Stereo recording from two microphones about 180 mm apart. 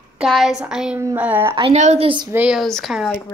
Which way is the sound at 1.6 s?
35° right (ahead or behind).